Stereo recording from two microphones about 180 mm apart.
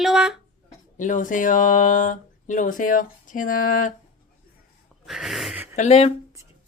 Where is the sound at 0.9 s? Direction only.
45° left (ahead or behind).